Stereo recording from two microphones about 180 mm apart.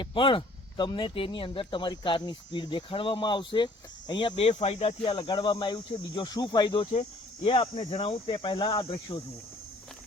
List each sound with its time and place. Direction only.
0.0 s speech: 30° left (ahead or behind)